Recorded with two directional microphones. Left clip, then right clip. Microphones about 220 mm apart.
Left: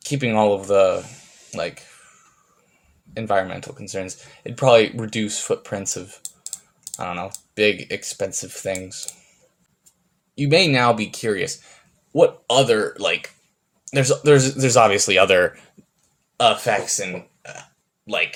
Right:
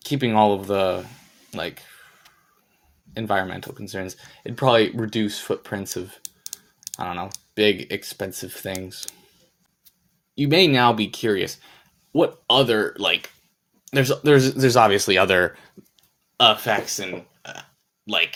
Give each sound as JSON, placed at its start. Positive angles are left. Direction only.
{"t": 0.0, "sound": "speech", "side_deg": -30}
{"t": 1.5, "sound": "a sound", "side_deg": -30}
{"t": 3.2, "sound": "speech", "side_deg": -30}
{"t": 10.3, "sound": "speech", "side_deg": -30}
{"t": 16.4, "sound": "speech", "side_deg": -40}